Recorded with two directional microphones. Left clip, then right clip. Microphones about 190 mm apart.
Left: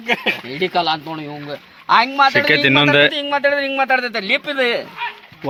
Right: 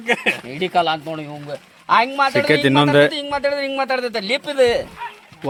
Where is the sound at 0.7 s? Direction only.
25° right (ahead or behind).